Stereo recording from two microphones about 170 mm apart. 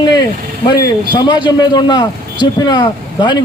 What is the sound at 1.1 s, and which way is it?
A man's voice, 25° left (ahead or behind).